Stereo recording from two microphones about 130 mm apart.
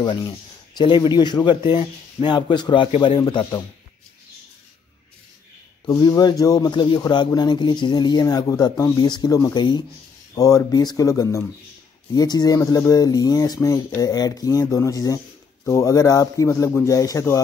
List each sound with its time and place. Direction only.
0.0 s speech: 35° left (ahead or behind)
5.9 s speech: 30° left (ahead or behind)